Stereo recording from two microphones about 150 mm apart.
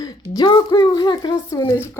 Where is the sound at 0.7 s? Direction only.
30° left (ahead or behind).